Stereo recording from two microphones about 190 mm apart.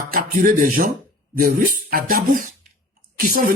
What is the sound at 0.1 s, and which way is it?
Speech, 50° right (ahead or behind).